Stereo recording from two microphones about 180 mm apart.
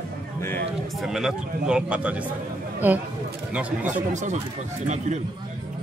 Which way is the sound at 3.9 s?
40° right (ahead or behind).